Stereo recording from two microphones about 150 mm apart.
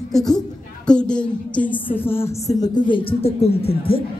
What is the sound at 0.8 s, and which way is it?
A woman's voice, 5° left (ahead or behind).